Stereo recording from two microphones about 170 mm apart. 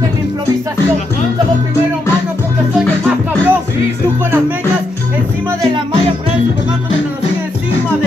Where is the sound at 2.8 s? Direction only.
10° right (ahead or behind).